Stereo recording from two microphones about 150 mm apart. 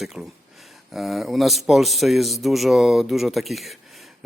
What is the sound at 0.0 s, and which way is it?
Speech, centre (ahead or behind).